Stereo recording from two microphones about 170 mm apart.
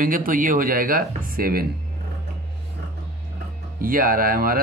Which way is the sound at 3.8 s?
55° right (ahead or behind).